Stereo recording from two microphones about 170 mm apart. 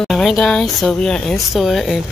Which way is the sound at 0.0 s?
Centre (ahead or behind).